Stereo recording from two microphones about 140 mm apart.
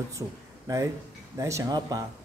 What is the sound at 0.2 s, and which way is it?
Speech, 20° right (ahead or behind).